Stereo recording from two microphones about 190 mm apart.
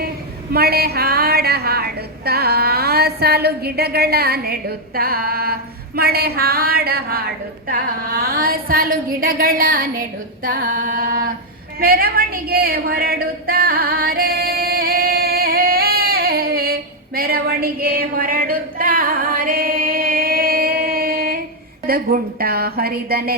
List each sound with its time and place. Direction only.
0.5 s a woman's voice: 55° right (ahead or behind)
11.8 s a sound: 50° right (ahead or behind)
21.8 s a woman's voice: 50° right (ahead or behind)